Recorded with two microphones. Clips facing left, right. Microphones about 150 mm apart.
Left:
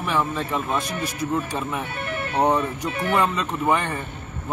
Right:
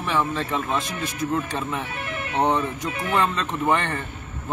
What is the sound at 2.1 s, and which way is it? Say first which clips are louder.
Music: left 2 dB; 35° left (ahead or behind).